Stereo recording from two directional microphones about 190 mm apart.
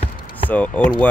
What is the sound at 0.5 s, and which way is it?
Speech, 5° left (ahead or behind).